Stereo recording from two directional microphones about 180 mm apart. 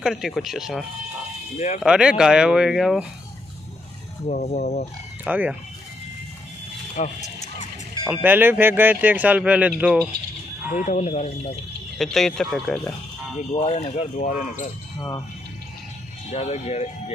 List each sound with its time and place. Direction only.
0.0 s speech: 5° right (ahead or behind)
4.3 s speech: 40° left (ahead or behind)
5.2 s speech: 10° right (ahead or behind)
7.0 s wild animals: 40° left (ahead or behind)
8.0 s speech: 10° right (ahead or behind)
10.7 s speech: 45° left (ahead or behind)
12.0 s speech: centre (ahead or behind)
13.4 s speech: 40° left (ahead or behind)
15.0 s speech: 20° left (ahead or behind)
16.3 s speech: 35° left (ahead or behind)